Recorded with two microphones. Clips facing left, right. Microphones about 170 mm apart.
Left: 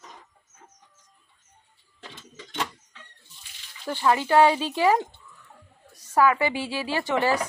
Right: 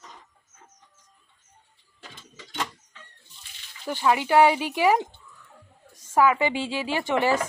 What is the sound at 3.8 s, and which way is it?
Speech, 10° right (ahead or behind).